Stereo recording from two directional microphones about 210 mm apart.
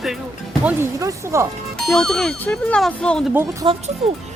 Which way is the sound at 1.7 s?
Centre (ahead or behind).